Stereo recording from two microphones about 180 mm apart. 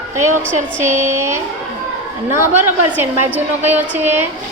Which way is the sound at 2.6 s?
10° right (ahead or behind).